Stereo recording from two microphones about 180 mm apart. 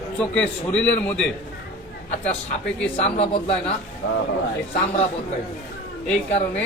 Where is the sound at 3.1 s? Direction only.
30° left (ahead or behind).